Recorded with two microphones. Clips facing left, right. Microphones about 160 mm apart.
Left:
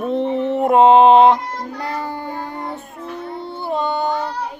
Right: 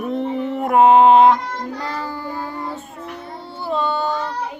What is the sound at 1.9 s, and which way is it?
Music, 55° left (ahead or behind).